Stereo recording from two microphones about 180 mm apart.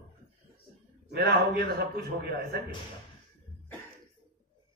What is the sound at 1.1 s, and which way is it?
A man's voice, 60° right (ahead or behind).